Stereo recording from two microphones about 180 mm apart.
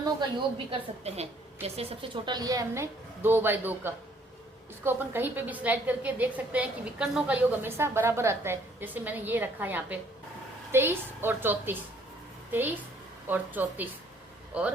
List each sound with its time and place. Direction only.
0.7 s a woman's voice: 35° right (ahead or behind); by 14.7 s 5° right (ahead or behind)